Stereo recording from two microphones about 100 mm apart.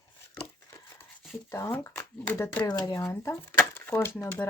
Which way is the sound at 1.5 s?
25° left (ahead or behind).